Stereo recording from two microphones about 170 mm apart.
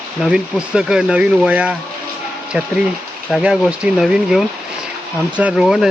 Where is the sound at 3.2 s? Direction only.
Centre (ahead or behind).